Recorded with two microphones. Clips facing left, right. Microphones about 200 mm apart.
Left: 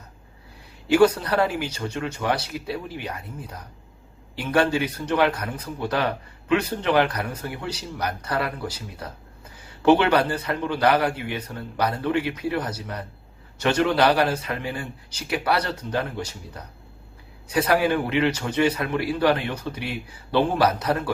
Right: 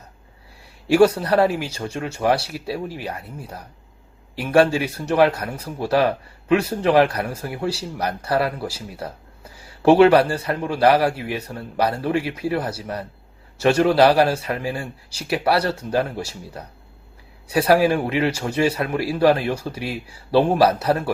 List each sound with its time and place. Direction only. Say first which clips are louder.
0.9 s speech: right 3 dB; 30° right (ahead or behind)